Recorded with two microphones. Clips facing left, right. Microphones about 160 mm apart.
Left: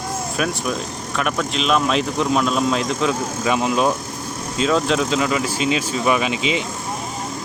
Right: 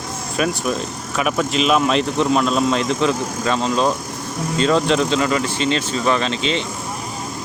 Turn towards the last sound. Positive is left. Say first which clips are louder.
# even
turn(degrees=10)  # may be behind; listen again after turning